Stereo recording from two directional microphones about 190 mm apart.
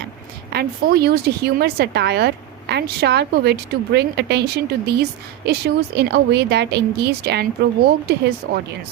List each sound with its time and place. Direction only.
0.5 s speech: 55° right (ahead or behind)